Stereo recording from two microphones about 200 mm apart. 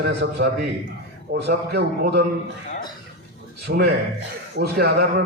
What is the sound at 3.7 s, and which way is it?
A man's voice, 55° right (ahead or behind).